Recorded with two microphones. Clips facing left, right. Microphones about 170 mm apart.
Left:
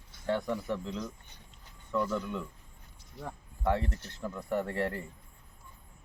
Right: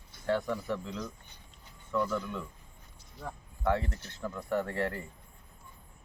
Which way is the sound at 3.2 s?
20° left (ahead or behind).